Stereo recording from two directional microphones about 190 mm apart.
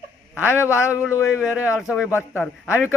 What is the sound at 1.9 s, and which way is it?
A man's voice, 5° right (ahead or behind).